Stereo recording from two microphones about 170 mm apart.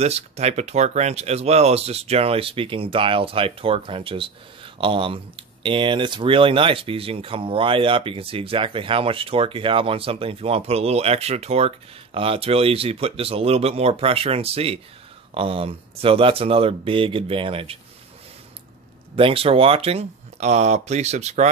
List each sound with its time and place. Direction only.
0.0 s speech: 40° right (ahead or behind)
19.1 s speech: 35° right (ahead or behind)